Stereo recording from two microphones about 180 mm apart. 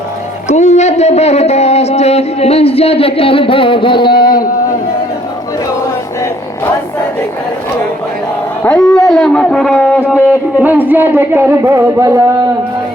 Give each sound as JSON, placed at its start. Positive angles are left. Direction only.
{"t": 0.4, "sound": "speech", "side_deg": 40}
{"t": 8.6, "sound": "a sound", "side_deg": 5}
{"t": 10.2, "sound": "speech", "side_deg": -10}